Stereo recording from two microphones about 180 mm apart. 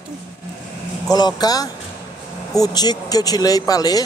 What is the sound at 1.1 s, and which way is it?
Speech, 20° left (ahead or behind).